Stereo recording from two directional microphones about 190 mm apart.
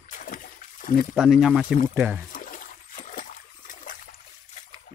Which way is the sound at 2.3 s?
45° left (ahead or behind).